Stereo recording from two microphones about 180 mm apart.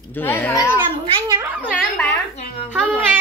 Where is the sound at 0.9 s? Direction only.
30° right (ahead or behind).